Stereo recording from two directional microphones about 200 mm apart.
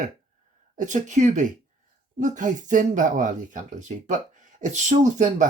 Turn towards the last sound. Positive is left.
turn(degrees=-35)  # may be behind; listen again after turning